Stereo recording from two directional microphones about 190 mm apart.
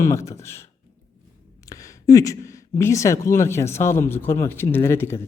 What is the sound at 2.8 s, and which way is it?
Speech, 15° left (ahead or behind).